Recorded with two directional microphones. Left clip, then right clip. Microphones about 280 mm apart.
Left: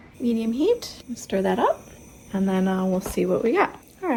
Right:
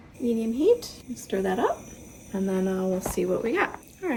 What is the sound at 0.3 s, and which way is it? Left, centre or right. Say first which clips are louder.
A woman's voice: even; left.